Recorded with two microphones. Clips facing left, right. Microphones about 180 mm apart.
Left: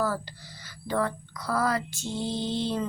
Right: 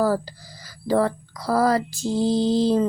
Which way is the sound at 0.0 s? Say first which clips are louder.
Right 7 dB; 40° right (ahead or behind).